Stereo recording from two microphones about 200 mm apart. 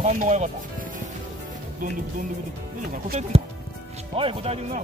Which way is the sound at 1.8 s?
45° right (ahead or behind).